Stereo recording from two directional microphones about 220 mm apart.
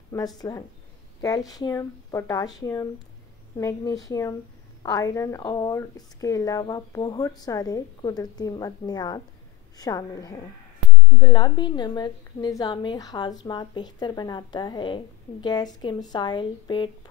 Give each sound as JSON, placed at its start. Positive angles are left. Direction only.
{"t": 0.1, "sound": "a woman's voice", "side_deg": 15}